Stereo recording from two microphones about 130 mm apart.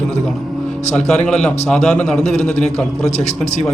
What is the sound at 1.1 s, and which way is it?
A man's voice, 5° left (ahead or behind).